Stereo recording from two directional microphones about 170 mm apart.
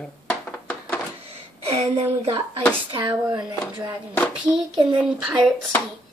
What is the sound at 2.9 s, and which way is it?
Speech, 25° right (ahead or behind).